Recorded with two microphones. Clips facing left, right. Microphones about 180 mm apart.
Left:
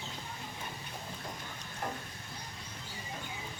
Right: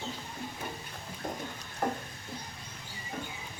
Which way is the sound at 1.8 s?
50° right (ahead or behind).